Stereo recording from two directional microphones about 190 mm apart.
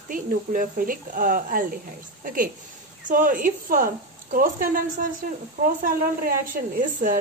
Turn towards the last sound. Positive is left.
turn(degrees=-45)  # may be behind; listen again after turning